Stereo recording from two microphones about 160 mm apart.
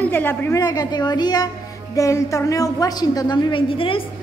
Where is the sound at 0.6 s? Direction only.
25° left (ahead or behind).